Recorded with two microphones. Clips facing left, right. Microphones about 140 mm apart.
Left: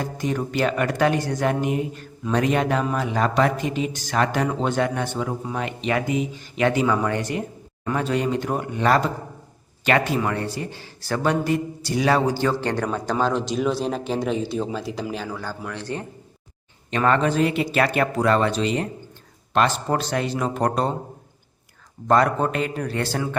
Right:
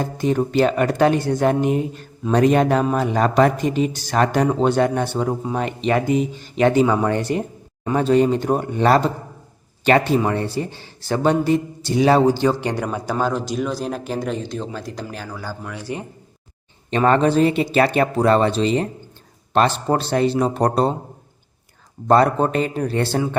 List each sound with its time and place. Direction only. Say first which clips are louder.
0.0 s a man's voice: right 5 dB; 30° right (ahead or behind); by 16.0 s 10° right (ahead or behind)
16.9 s a man's voice: right 4 dB; 30° right (ahead or behind)
22.0 s a man's voice: right 3 dB; 30° right (ahead or behind)